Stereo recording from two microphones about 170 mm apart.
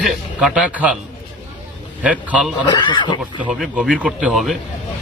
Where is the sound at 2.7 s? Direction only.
25° left (ahead or behind).